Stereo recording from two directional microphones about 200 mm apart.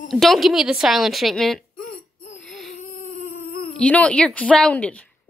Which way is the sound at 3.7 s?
5° left (ahead or behind).